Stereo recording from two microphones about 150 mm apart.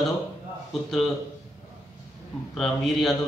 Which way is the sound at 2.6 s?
Centre (ahead or behind).